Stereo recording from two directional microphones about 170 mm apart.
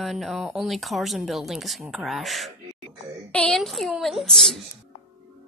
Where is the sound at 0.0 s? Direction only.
Centre (ahead or behind).